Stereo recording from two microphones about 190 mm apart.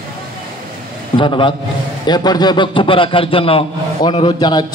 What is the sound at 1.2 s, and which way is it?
A man's voice, 25° left (ahead or behind).